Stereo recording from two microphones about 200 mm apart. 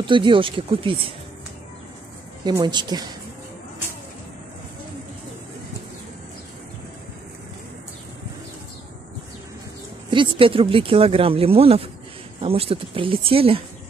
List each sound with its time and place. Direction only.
0.0 s speech: 25° right (ahead or behind)
2.4 s speech: 20° right (ahead or behind)
10.1 s speech: 25° right (ahead or behind)